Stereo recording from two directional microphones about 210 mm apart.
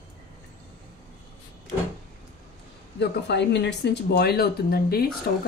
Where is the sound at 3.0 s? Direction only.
55° left (ahead or behind).